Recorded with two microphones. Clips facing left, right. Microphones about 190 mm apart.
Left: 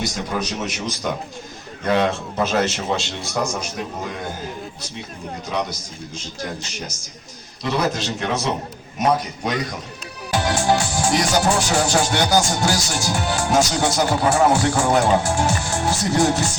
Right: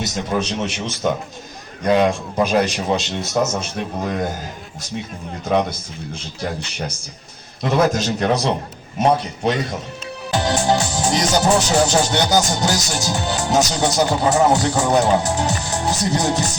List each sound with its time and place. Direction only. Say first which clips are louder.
0.0 s speech: right 3 dB; 25° right (ahead or behind)
1.8 s a man's voice: right 3 dB; 15° right (ahead or behind)
7.6 s a man's voice: right 5 dB; 50° right (ahead or behind); by 16.4 s 20° right (ahead or behind)